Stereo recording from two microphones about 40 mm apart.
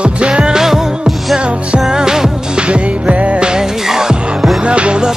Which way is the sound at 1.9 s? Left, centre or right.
Centre.